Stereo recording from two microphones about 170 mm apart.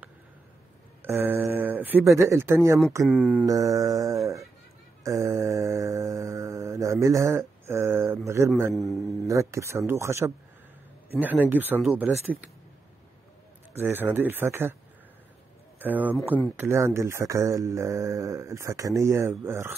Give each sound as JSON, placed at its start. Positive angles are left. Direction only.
{"t": 1.0, "sound": "speech", "side_deg": -10}
{"t": 3.1, "sound": "a man's voice", "side_deg": -5}
{"t": 3.4, "sound": "music", "side_deg": -20}
{"t": 5.0, "sound": "mantra", "side_deg": -20}
{"t": 8.3, "sound": "speech", "side_deg": -15}
{"t": 8.7, "sound": "a man's voice", "side_deg": 0}
{"t": 9.3, "sound": "speech", "side_deg": -15}
{"t": 13.7, "sound": "speech", "side_deg": -10}
{"t": 15.8, "sound": "speech", "side_deg": -10}